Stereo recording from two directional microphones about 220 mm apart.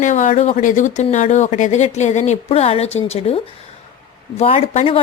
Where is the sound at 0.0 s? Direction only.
35° left (ahead or behind).